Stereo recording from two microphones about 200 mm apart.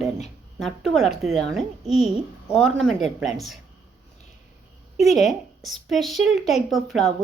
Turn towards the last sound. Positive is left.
turn(degrees=0)  # may be behind; listen again after turning